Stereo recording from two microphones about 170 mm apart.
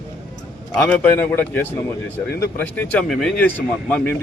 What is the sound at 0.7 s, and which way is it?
Speech, 10° left (ahead or behind).